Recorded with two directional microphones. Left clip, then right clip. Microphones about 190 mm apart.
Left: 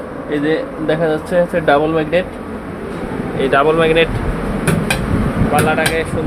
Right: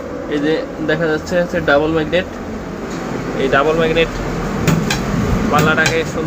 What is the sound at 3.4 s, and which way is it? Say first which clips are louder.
Speech: left 2 dB; 15° left (ahead or behind).